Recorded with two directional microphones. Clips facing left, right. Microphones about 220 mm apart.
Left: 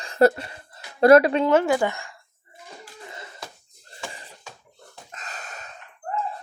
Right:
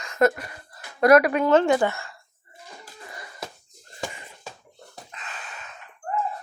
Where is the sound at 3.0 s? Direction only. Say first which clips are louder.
Right 3 dB; 25° left (ahead or behind).